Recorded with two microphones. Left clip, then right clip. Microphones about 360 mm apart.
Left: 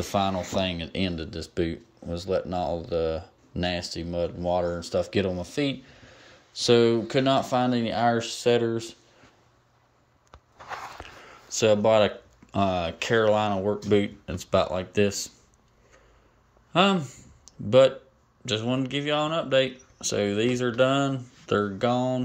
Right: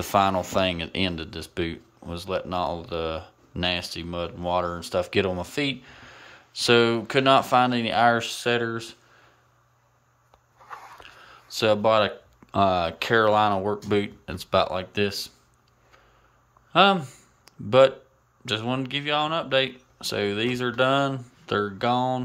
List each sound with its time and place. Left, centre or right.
0.0 s speech: centre
11.4 s speech: centre
16.7 s speech: centre